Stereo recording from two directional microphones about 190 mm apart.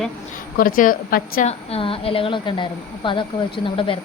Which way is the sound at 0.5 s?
50° left (ahead or behind).